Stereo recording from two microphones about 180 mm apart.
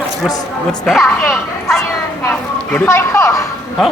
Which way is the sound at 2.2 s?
10° left (ahead or behind).